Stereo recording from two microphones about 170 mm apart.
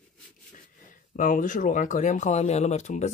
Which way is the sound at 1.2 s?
50° left (ahead or behind).